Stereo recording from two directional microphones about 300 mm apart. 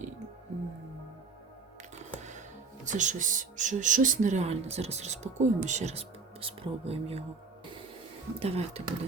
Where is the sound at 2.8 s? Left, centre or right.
Right.